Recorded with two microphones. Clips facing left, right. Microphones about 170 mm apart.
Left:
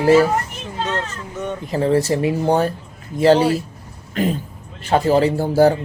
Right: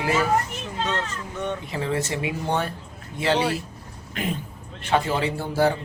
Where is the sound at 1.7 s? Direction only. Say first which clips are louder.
Left 12 dB; 40° left (ahead or behind).